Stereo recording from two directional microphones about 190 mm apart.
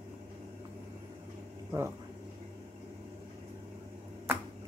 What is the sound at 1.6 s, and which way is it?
Speech, 10° right (ahead or behind).